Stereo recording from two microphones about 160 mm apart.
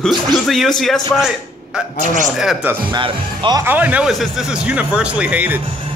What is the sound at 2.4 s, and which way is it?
Speech, 5° right (ahead or behind).